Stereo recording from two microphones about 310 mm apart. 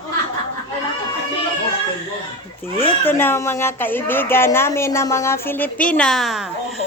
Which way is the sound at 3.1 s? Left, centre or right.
Centre.